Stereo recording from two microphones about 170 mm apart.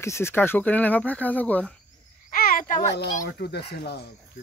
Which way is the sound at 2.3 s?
55° left (ahead or behind).